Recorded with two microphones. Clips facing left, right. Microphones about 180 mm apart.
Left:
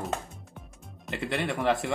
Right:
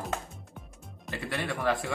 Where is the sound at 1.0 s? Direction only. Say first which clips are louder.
Left 3 dB; 20° left (ahead or behind).